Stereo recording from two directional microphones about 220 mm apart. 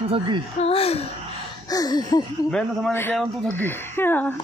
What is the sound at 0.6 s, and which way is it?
Speech, 25° left (ahead or behind).